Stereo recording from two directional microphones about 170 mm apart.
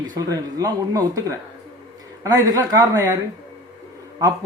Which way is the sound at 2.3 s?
20° right (ahead or behind).